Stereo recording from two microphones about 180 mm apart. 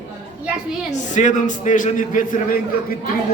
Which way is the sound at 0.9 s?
45° left (ahead or behind).